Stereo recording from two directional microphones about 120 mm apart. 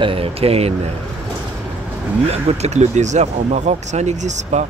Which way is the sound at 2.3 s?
60° right (ahead or behind).